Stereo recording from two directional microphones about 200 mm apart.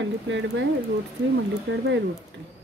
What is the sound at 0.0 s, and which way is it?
Speech, 65° right (ahead or behind).